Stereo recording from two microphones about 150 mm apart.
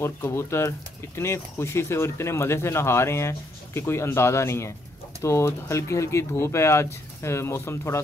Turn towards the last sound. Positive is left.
turn(degrees=15)  # may be behind; listen again after turning